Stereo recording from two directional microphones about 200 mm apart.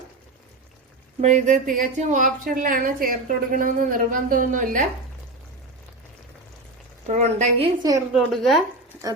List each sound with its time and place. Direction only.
1.2 s a woman's voice: 35° right (ahead or behind)
7.1 s a woman's voice: 35° right (ahead or behind)
7.8 s a woman's voice: 15° right (ahead or behind)
8.1 s speech: centre (ahead or behind)